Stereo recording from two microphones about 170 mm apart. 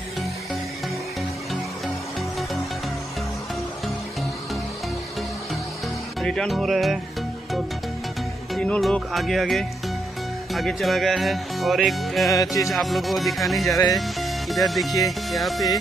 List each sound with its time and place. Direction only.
6.2 s speech: centre (ahead or behind)
8.5 s speech: 5° left (ahead or behind)
12.3 s speech: 20° left (ahead or behind)
12.6 s speech: centre (ahead or behind)
13.7 s speech: 20° left (ahead or behind)
13.9 s speech: centre (ahead or behind)